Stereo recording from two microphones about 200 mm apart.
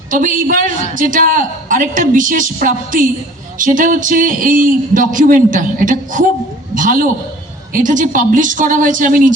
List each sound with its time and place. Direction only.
0.1 s a man's voice: 40° right (ahead or behind)